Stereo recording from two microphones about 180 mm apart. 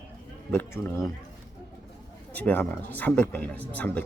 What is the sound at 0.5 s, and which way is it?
Speech, 15° left (ahead or behind).